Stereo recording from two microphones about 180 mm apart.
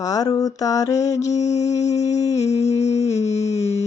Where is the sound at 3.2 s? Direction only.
40° left (ahead or behind).